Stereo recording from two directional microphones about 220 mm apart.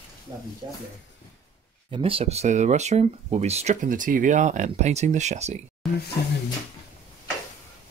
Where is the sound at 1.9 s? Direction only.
25° right (ahead or behind).